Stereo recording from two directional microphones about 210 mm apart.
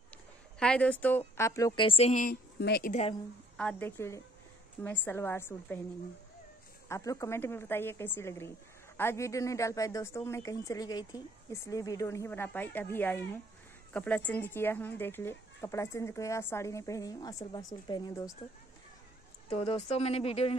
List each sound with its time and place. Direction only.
0.6 s speech: 5° left (ahead or behind); by 2.3 s 35° left (ahead or behind)
2.6 s speech: 45° left (ahead or behind)
3.5 s speech: 10° left (ahead or behind)
6.9 s speech: 15° left (ahead or behind)
19.5 s speech: 25° left (ahead or behind)